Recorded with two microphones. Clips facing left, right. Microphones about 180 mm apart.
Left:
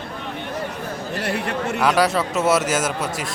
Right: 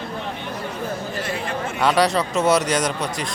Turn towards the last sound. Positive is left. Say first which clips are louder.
# even
turn(degrees=5)  # may be behind; listen again after turning